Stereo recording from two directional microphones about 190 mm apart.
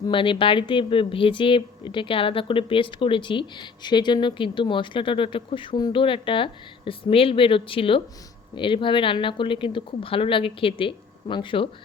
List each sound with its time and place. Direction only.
0.1 s speech: 25° left (ahead or behind)